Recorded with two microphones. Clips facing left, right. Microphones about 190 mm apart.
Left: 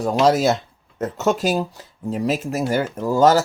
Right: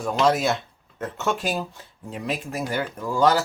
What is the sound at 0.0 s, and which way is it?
Speech, 40° left (ahead or behind).